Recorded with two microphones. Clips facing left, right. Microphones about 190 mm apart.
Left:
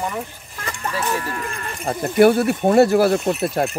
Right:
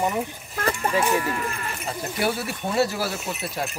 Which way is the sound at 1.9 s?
55° left (ahead or behind).